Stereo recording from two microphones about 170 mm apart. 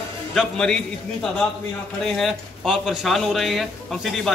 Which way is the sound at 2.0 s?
Centre (ahead or behind).